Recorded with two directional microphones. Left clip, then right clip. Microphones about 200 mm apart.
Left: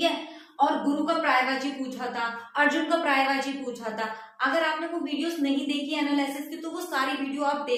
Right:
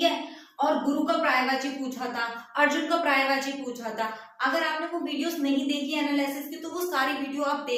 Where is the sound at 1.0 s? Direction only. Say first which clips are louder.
Left 1 dB; 20° left (ahead or behind).